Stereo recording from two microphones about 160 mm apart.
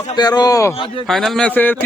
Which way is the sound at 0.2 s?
25° left (ahead or behind).